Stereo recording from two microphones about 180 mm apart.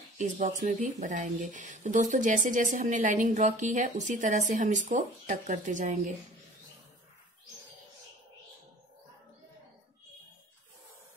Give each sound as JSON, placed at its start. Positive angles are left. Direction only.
{"t": 0.2, "sound": "speech", "side_deg": -45}